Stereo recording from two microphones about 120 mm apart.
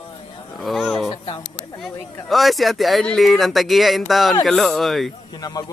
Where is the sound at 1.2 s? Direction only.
45° left (ahead or behind).